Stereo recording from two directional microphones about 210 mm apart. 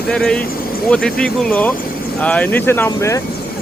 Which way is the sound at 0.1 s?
5° left (ahead or behind).